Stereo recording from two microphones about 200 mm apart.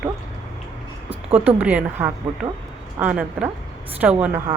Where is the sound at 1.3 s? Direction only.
5° right (ahead or behind).